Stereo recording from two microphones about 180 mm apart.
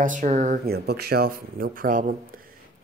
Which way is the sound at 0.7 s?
65° right (ahead or behind).